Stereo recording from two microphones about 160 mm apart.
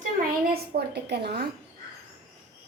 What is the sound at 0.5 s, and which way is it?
Speech, 90° right.